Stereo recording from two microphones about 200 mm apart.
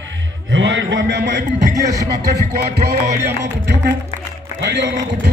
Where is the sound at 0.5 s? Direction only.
65° right (ahead or behind).